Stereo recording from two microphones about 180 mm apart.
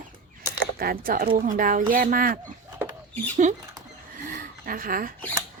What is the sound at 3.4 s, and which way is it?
Speech, 40° right (ahead or behind).